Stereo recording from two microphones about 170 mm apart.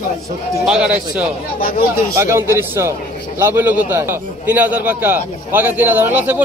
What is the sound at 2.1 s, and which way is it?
A man's voice, 15° right (ahead or behind).